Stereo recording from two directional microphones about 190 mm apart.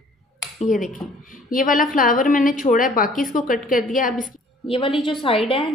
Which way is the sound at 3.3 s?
45° left (ahead or behind).